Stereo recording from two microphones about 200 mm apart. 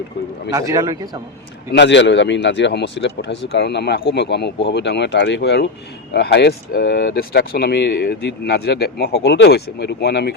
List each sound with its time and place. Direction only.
0.5 s a man's voice: 15° right (ahead or behind)
1.7 s speech: 65° left (ahead or behind)